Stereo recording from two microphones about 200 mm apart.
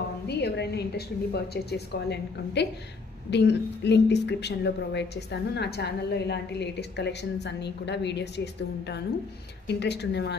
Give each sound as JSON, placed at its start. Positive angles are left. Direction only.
{"t": 0.3, "sound": "a woman's voice", "side_deg": 55}